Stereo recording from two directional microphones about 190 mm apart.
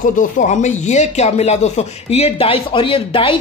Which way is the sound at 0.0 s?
40° left (ahead or behind).